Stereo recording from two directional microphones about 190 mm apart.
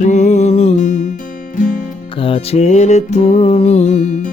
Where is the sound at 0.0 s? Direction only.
40° left (ahead or behind).